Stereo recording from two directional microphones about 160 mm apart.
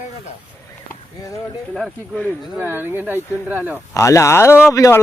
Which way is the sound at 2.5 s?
10° right (ahead or behind).